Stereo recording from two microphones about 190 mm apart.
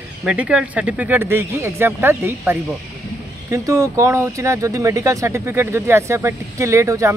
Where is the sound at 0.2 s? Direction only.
5° right (ahead or behind).